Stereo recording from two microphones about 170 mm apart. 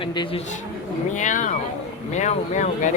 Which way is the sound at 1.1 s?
45° left (ahead or behind).